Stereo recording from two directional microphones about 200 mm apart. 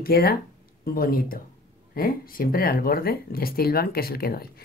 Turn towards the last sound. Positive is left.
turn(degrees=50)  # may be behind; listen again after turning